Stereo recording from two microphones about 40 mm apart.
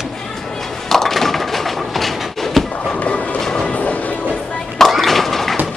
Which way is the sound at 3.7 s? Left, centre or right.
Left.